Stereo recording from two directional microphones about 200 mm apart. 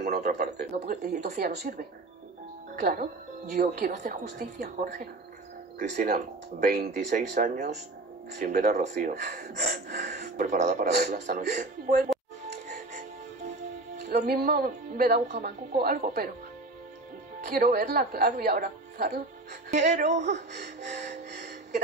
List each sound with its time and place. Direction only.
0.0 s a sound: 35° right (ahead or behind)
0.6 s speech: 50° right (ahead or behind)
1.0 s a woman's voice: 35° right (ahead or behind); by 10.0 s 50° right (ahead or behind)
10.3 s a woman's voice: 40° right (ahead or behind)
12.1 s music: centre (ahead or behind)
14.0 s speech: 50° right (ahead or behind)
17.6 s speech: 45° right (ahead or behind)
20.1 s a woman's voice: 35° right (ahead or behind)
20.8 s music: 35° right (ahead or behind)